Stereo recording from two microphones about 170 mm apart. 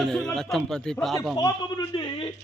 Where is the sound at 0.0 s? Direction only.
Centre (ahead or behind).